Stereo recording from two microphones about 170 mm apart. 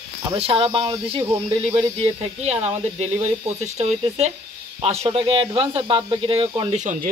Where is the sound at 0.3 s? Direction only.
35° right (ahead or behind).